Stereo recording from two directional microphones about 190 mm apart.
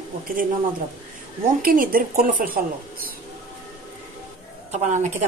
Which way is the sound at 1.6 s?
50° right (ahead or behind).